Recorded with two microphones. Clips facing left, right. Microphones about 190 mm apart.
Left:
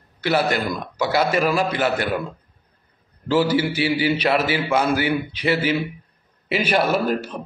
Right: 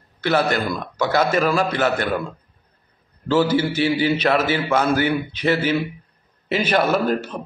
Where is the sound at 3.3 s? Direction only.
15° left (ahead or behind).